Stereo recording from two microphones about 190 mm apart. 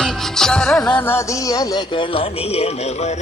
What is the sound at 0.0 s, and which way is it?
Music, 5° left (ahead or behind).